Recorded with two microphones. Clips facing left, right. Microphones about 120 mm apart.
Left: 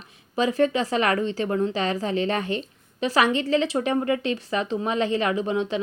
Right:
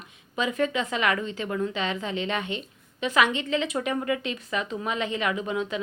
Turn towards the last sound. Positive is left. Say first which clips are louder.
# left 4 dB
turn(degrees=30)  # may be behind; listen again after turning